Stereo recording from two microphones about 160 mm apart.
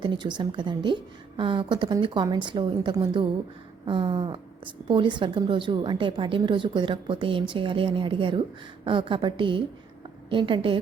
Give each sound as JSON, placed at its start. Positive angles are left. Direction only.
{"t": 0.0, "sound": "a woman's voice", "side_deg": -30}